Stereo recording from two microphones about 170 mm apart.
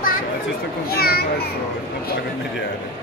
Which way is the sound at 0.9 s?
65° left (ahead or behind).